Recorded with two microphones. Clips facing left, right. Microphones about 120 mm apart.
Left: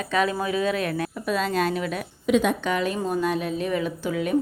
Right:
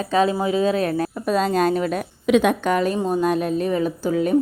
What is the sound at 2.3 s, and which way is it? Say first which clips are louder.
Speech: right 4 dB; 70° right (ahead or behind).